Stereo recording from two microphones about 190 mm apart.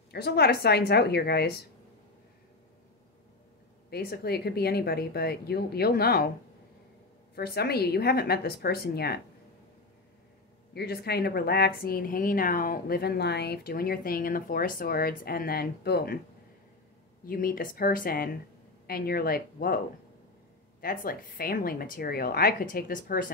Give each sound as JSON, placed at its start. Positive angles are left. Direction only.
{"t": 0.1, "sound": "speech", "side_deg": 55}
{"t": 3.9, "sound": "speech", "side_deg": 55}
{"t": 7.3, "sound": "speech", "side_deg": 55}
{"t": 10.7, "sound": "speech", "side_deg": 55}
{"t": 17.3, "sound": "speech", "side_deg": 50}
{"t": 20.8, "sound": "speech", "side_deg": 50}